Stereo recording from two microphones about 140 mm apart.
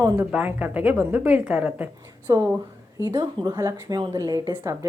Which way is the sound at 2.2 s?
25° right (ahead or behind).